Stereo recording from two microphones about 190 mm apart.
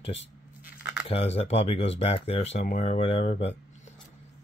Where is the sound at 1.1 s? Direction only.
30° left (ahead or behind).